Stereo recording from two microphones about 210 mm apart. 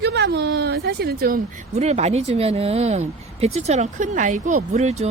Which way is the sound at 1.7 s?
30° right (ahead or behind).